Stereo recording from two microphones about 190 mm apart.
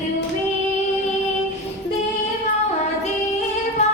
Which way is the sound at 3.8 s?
35° left (ahead or behind).